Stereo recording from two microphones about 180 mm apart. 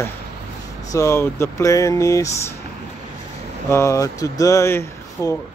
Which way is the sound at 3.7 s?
15° left (ahead or behind).